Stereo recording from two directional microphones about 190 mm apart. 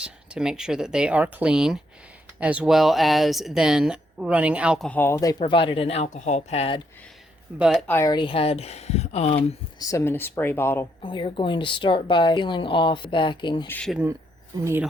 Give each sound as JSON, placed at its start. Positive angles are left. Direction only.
{"t": 0.0, "sound": "speech", "side_deg": -5}
{"t": 4.9, "sound": "speech", "side_deg": 10}
{"t": 5.4, "sound": "speech", "side_deg": 30}
{"t": 7.5, "sound": "speech", "side_deg": -10}
{"t": 7.9, "sound": "speech", "side_deg": 15}
{"t": 9.7, "sound": "speech", "side_deg": 15}
{"t": 11.0, "sound": "a woman's voice", "side_deg": 25}
{"t": 13.7, "sound": "speech", "side_deg": 5}
{"t": 13.9, "sound": "speech", "side_deg": -10}